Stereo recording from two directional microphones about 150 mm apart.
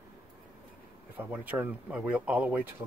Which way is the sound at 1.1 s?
10° right (ahead or behind).